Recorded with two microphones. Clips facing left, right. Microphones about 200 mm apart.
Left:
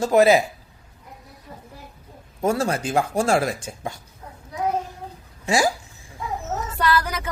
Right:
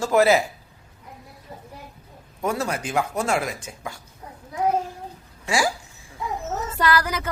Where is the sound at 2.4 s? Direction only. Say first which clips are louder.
Left 4 dB; 30° left (ahead or behind).